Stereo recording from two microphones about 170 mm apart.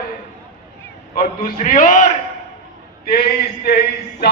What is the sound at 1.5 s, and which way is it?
Speech, 50° left (ahead or behind).